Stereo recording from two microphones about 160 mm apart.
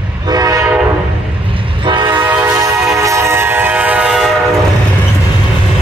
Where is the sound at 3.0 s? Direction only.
20° right (ahead or behind).